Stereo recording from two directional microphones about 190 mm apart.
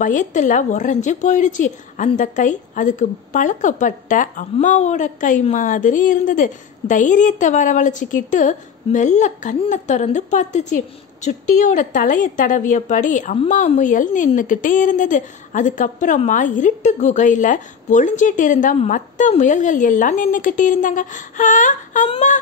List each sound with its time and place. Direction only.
0.0 s a woman's voice: 40° left (ahead or behind)